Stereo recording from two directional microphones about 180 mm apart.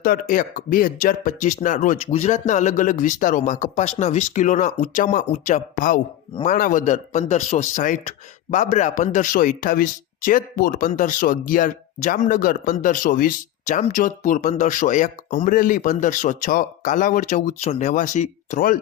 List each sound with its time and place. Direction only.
0.0 s a man's voice: 50° left (ahead or behind)